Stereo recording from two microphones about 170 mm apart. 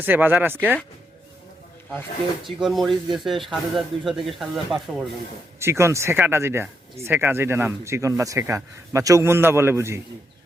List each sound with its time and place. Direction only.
0.0 s speech: 10° right (ahead or behind)
2.4 s speech: centre (ahead or behind)
5.5 s speech: 15° right (ahead or behind)